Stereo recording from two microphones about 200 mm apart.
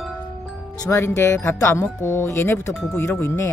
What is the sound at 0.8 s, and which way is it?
Speech, 15° left (ahead or behind).